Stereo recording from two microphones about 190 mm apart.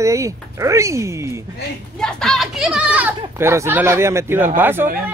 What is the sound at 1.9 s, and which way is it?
Speech, 5° left (ahead or behind).